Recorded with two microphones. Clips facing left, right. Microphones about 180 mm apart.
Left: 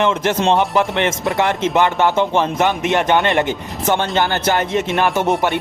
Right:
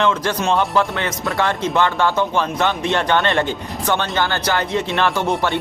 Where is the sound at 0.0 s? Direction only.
20° left (ahead or behind).